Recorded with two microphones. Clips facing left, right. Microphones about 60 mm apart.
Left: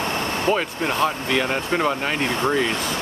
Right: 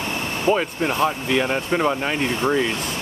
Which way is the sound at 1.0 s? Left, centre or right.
Centre.